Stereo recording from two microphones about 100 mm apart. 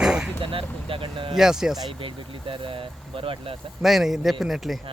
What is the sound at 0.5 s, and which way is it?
Speech, 60° right (ahead or behind).